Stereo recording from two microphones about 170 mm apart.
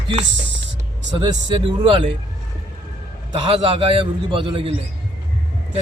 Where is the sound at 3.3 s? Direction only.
30° right (ahead or behind).